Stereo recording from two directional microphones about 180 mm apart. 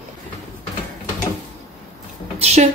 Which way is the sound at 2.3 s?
35° right (ahead or behind).